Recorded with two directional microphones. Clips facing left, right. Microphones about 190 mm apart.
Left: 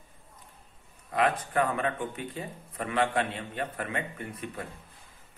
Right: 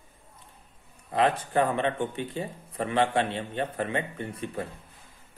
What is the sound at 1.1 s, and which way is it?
A man's voice, 30° right (ahead or behind).